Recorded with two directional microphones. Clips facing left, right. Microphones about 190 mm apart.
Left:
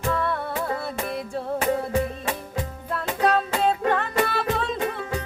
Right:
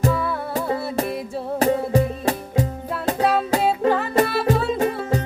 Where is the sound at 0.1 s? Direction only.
5° right (ahead or behind).